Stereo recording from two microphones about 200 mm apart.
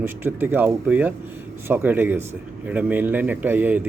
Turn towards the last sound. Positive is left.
turn(degrees=-10)  # may be behind; listen again after turning